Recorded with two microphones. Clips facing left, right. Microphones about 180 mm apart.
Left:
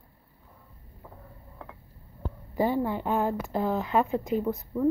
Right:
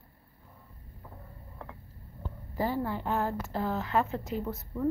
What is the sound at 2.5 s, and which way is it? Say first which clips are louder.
A woman's voice: left 5 dB; 20° left (ahead or behind).